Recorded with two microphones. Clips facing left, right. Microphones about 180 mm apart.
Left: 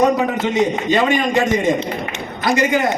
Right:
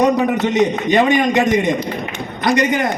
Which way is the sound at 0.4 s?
20° right (ahead or behind).